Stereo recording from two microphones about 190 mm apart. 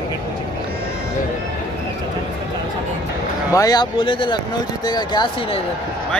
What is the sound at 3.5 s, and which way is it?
Speech, 20° left (ahead or behind).